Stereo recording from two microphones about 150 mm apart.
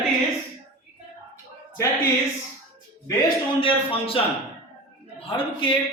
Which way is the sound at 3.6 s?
35° left (ahead or behind).